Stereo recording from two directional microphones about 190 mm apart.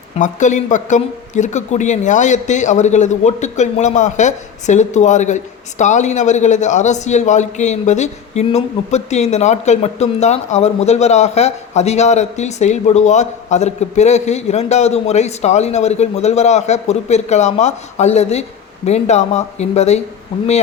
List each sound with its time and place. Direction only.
0.2 s speech: 40° left (ahead or behind)